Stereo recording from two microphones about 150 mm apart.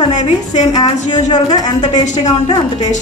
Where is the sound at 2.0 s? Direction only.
50° left (ahead or behind).